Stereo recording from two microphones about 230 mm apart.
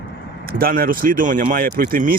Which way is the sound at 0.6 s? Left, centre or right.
Right.